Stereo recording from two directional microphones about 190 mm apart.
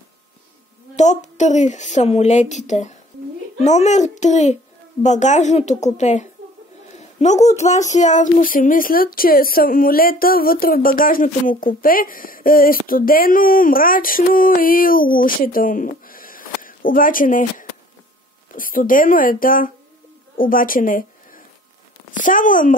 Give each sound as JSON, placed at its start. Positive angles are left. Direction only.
{"t": 0.9, "sound": "a woman's voice", "side_deg": 40}
{"t": 7.0, "sound": "a sound", "side_deg": 35}
{"t": 7.4, "sound": "speech", "side_deg": 35}